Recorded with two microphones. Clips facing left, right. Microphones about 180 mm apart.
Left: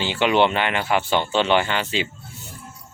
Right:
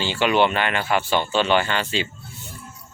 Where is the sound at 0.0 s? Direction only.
20° left (ahead or behind).